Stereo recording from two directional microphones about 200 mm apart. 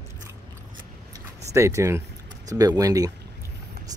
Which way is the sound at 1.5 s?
15° right (ahead or behind).